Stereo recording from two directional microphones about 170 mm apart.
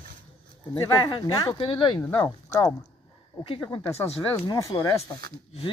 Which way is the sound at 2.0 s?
10° left (ahead or behind).